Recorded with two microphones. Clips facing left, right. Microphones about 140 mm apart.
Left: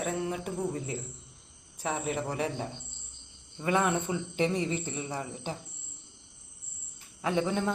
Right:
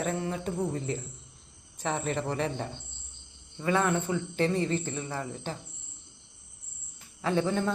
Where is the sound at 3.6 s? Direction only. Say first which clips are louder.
Right 1 dB; 20° left (ahead or behind).